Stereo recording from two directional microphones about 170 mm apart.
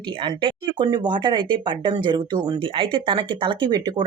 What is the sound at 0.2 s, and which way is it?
Speech, 30° right (ahead or behind).